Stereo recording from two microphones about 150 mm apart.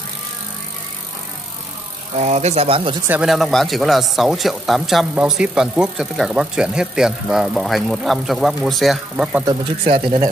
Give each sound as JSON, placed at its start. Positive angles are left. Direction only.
{"t": 2.1, "sound": "speech", "side_deg": -45}
{"t": 3.1, "sound": "speech", "side_deg": -5}
{"t": 9.8, "sound": "speech", "side_deg": -35}